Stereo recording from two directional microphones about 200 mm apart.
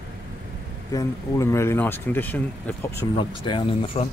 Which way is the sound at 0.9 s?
15° left (ahead or behind).